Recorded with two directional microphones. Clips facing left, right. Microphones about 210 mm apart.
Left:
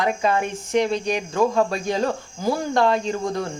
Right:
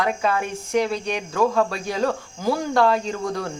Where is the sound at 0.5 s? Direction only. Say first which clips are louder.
Left 1 dB; 5° right (ahead or behind).